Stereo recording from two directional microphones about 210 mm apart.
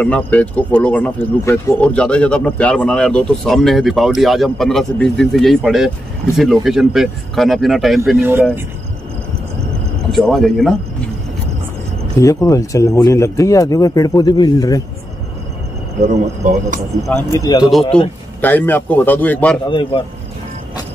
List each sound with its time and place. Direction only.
0.0 s speech: 5° left (ahead or behind)
8.2 s speech: 10° right (ahead or behind)
10.1 s speech: centre (ahead or behind)
12.2 s speech: 15° left (ahead or behind)
16.4 s speech: 35° right (ahead or behind)
17.1 s a man's voice: 15° left (ahead or behind)
18.4 s speech: 10° left (ahead or behind)
19.7 s a man's voice: 25° left (ahead or behind)